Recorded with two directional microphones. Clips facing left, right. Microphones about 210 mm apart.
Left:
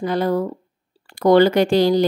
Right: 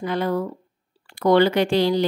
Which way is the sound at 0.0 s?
40° left (ahead or behind).